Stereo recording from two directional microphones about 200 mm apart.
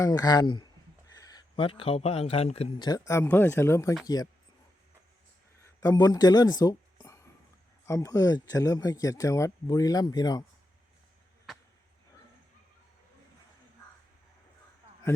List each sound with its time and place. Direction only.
0.0 s speech: 20° left (ahead or behind)
5.8 s speech: 20° left (ahead or behind)